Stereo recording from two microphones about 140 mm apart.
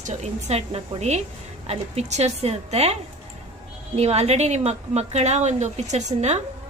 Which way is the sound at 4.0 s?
50° right (ahead or behind).